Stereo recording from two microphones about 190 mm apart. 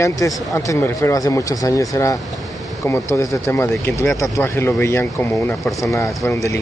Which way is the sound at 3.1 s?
15° left (ahead or behind).